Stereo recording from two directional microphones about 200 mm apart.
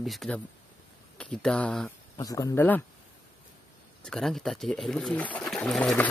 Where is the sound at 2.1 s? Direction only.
20° left (ahead or behind).